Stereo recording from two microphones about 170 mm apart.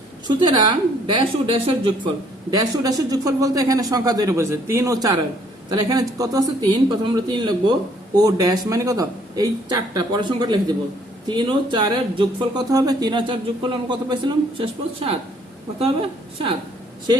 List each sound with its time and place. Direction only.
0.3 s a woman's voice: 25° right (ahead or behind)